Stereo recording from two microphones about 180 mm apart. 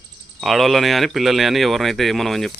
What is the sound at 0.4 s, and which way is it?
Speech, centre (ahead or behind).